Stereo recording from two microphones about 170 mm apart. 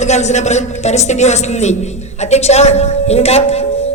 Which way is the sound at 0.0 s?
40° left (ahead or behind).